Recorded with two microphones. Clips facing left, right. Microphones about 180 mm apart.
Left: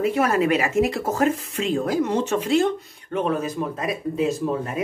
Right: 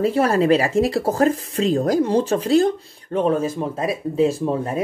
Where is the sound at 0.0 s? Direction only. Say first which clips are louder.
Right 3 dB; 30° right (ahead or behind).